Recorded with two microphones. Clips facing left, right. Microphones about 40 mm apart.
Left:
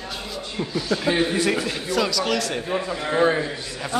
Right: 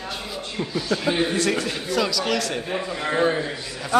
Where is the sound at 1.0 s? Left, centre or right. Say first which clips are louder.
Left 1 dB; centre.